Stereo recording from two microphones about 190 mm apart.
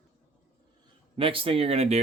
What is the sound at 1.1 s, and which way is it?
Speech, 30° right (ahead or behind).